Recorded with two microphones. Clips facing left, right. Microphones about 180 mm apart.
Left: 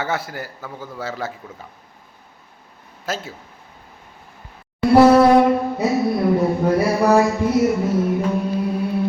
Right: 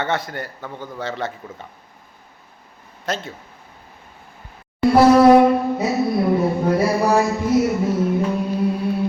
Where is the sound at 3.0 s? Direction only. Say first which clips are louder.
Right 1 dB; 5° left (ahead or behind).